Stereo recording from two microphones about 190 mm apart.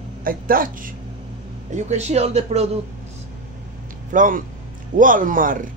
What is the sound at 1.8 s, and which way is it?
Speech, 35° right (ahead or behind).